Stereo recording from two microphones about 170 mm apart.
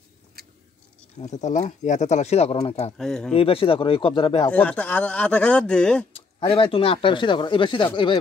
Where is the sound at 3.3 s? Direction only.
35° left (ahead or behind).